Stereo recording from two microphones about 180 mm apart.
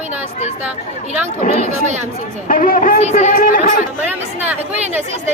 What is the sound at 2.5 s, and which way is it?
Speech, 45° left (ahead or behind).